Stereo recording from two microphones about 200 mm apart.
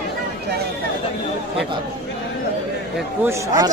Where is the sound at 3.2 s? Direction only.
20° right (ahead or behind).